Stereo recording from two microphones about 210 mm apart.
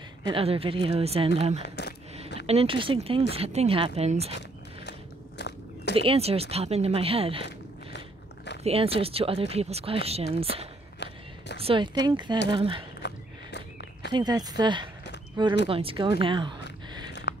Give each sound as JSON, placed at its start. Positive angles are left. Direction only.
{"t": 0.3, "sound": "speech", "side_deg": -25}
{"t": 1.6, "sound": "speech", "side_deg": 55}
{"t": 2.4, "sound": "speech", "side_deg": -25}
{"t": 5.4, "sound": "biting", "side_deg": 55}
{"t": 5.9, "sound": "speech", "side_deg": -25}
{"t": 8.6, "sound": "speech", "side_deg": -25}
{"t": 13.0, "sound": "walk", "side_deg": 55}
{"t": 14.1, "sound": "speech", "side_deg": -20}
{"t": 16.6, "sound": "a sound", "side_deg": 55}